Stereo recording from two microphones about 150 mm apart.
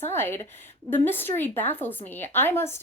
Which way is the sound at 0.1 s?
15° left (ahead or behind).